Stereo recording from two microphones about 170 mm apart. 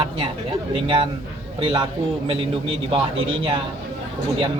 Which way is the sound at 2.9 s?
30° right (ahead or behind).